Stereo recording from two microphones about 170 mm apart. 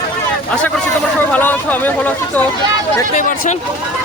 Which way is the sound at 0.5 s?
5° left (ahead or behind).